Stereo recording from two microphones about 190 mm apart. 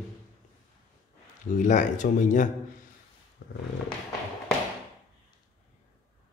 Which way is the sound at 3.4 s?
55° left (ahead or behind).